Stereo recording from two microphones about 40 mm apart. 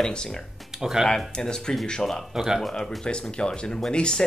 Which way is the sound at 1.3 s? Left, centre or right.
Centre.